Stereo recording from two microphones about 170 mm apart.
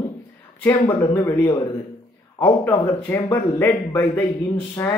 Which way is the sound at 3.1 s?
15° left (ahead or behind).